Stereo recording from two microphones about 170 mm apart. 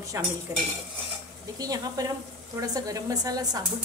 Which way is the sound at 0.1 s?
15° right (ahead or behind).